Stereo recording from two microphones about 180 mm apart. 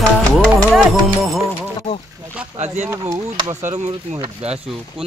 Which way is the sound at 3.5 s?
40° right (ahead or behind).